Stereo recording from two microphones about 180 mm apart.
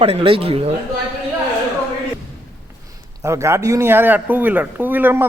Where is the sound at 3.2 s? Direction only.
15° right (ahead or behind).